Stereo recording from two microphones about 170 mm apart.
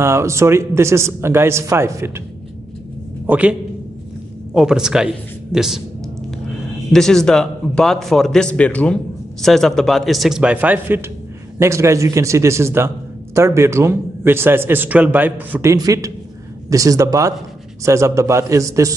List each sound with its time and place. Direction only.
0.0 s a man's voice: 15° right (ahead or behind)
3.3 s a man's voice: 10° right (ahead or behind)
4.6 s a man's voice: 5° right (ahead or behind)
6.9 s a man's voice: 5° left (ahead or behind); by 18.9 s 20° right (ahead or behind)